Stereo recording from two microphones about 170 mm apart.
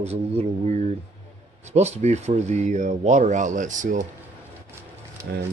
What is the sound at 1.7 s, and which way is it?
Speech, 40° right (ahead or behind).